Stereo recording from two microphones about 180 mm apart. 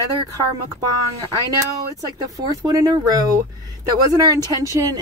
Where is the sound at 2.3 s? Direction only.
20° right (ahead or behind).